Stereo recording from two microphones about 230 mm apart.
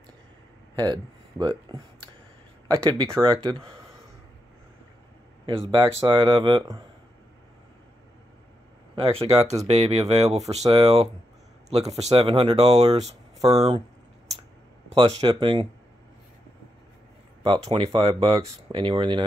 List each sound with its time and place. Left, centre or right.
0.7 s speech: centre
5.5 s speech: right
8.9 s speech: right
14.9 s speech: right
17.5 s speech: right